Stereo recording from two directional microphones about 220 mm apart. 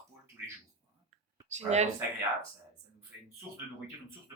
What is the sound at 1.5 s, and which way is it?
Speech, 30° right (ahead or behind).